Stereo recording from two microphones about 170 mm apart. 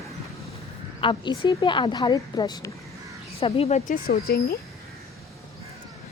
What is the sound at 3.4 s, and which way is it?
Speech, 40° left (ahead or behind).